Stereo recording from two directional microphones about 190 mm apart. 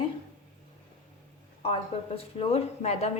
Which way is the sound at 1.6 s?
30° left (ahead or behind).